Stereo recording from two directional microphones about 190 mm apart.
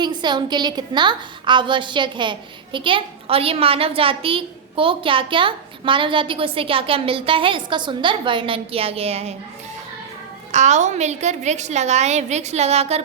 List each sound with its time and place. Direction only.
0.0 s a woman's voice: 25° right (ahead or behind)
10.5 s a woman's voice: 40° right (ahead or behind)